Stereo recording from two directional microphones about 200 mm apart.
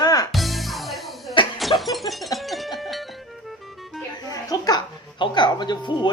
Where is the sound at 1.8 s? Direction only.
Centre (ahead or behind).